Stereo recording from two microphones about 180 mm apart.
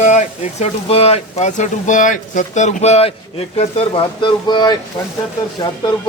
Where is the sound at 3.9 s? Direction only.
25° left (ahead or behind).